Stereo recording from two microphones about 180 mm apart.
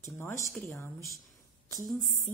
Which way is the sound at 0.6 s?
10° left (ahead or behind).